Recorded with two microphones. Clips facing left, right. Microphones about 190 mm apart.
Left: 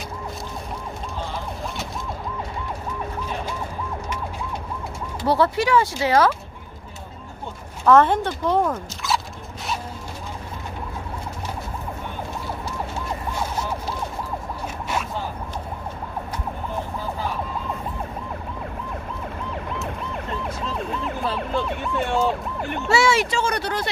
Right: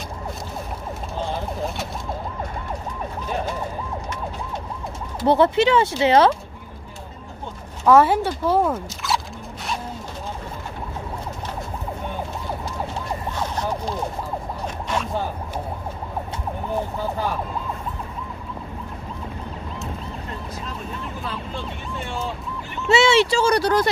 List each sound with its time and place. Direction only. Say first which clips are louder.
5.2 s speech: right 4 dB; 20° right (ahead or behind)
7.8 s speech: right 1 dB; 10° right (ahead or behind)
19.5 s ambulance: left 2 dB; 65° left (ahead or behind)
22.8 s a sound: right 4 dB; 25° right (ahead or behind); by 23.9 s 40° right (ahead or behind)